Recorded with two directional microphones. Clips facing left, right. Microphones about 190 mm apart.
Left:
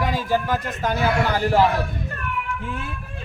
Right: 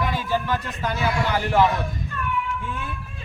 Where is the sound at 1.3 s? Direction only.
40° left (ahead or behind).